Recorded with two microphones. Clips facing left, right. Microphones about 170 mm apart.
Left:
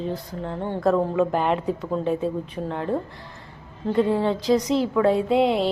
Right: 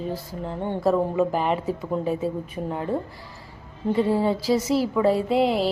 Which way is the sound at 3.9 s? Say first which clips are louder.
Left 1 dB; 5° right (ahead or behind).